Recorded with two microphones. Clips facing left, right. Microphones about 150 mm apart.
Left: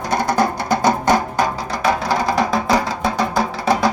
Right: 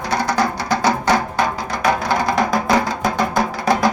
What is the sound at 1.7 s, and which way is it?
Music, 5° left (ahead or behind).